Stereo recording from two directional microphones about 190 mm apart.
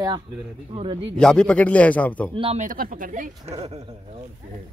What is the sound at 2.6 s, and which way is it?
Speech, 45° right (ahead or behind).